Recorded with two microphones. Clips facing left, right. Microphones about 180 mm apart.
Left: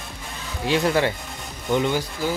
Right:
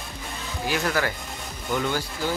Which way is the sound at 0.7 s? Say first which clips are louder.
Left 5 dB; 25° left (ahead or behind).